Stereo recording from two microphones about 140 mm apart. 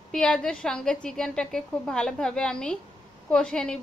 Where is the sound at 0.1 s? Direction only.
5° left (ahead or behind).